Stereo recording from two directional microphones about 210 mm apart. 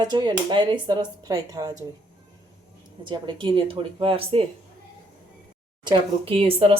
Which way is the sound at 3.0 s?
20° right (ahead or behind).